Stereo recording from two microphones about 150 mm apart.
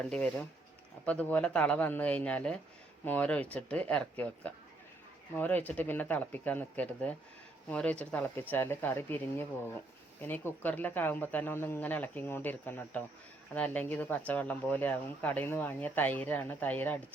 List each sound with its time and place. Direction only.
0.1 s speech: 5° left (ahead or behind)